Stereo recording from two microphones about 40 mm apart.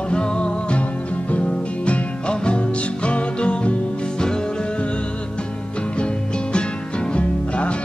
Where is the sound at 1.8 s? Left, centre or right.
Left.